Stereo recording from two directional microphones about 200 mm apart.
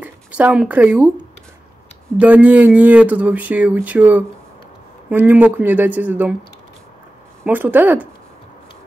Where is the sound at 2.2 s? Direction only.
5° right (ahead or behind).